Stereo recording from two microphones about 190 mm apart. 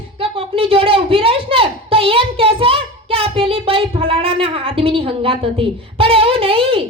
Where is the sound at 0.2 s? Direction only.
30° right (ahead or behind).